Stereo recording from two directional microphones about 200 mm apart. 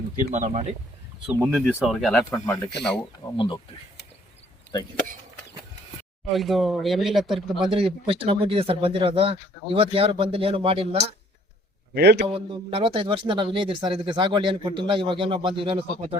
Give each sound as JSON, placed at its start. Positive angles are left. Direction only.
{"t": 0.3, "sound": "speech", "side_deg": -40}
{"t": 1.3, "sound": "speech", "side_deg": -10}
{"t": 1.5, "sound": "speech", "side_deg": 0}
{"t": 3.3, "sound": "speech", "side_deg": 25}
{"t": 6.3, "sound": "speech", "side_deg": 0}
{"t": 7.7, "sound": "speech", "side_deg": -25}
{"t": 11.9, "sound": "a man's voice", "side_deg": -55}
{"t": 12.3, "sound": "speech", "side_deg": -25}